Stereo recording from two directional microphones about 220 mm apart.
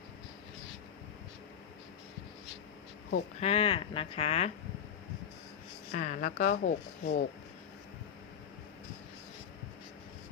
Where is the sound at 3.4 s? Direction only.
25° left (ahead or behind).